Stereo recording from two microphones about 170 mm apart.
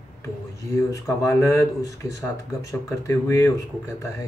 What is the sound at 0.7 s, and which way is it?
Speech, 20° left (ahead or behind).